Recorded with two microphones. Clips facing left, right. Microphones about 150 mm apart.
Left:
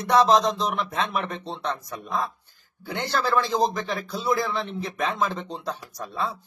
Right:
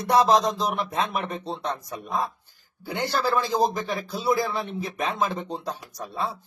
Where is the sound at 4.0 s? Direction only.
30° right (ahead or behind).